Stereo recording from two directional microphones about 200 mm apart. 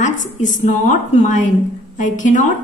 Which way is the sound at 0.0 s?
40° left (ahead or behind).